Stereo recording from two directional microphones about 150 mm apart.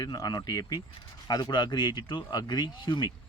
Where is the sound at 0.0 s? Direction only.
25° left (ahead or behind).